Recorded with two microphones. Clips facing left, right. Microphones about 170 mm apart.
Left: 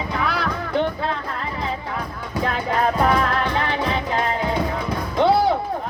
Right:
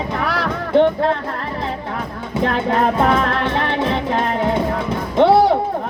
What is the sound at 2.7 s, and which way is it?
Music, 25° right (ahead or behind).